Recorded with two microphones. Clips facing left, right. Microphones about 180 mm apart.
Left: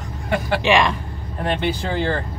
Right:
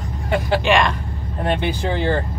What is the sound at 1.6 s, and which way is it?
Speech, 20° right (ahead or behind).